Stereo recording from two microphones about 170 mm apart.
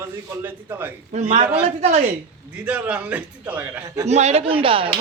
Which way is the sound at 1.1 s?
45° right (ahead or behind).